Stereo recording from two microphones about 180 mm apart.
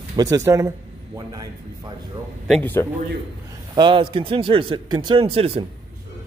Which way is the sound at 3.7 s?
25° right (ahead or behind).